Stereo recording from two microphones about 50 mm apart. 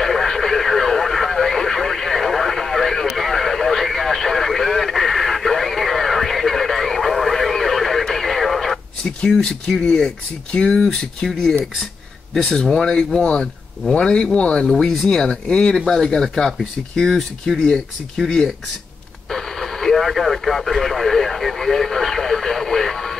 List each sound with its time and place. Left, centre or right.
0.0 s radio: centre
9.4 s speech: centre
14.7 s speech: centre
15.0 s speech: centre